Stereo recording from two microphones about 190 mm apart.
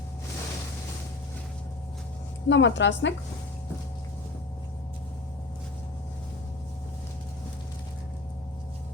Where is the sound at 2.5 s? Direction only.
70° left (ahead or behind).